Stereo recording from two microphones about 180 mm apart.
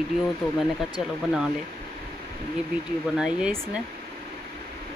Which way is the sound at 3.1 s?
5° right (ahead or behind).